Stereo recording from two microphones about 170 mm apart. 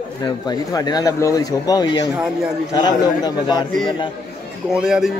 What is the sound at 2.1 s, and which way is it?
Speech, 5° right (ahead or behind).